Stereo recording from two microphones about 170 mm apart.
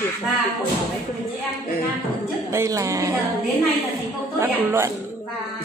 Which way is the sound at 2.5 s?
15° right (ahead or behind).